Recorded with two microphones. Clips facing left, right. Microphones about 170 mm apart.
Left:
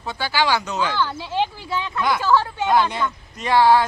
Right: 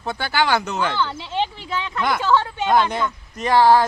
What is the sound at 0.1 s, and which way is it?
Speech, 55° right (ahead or behind).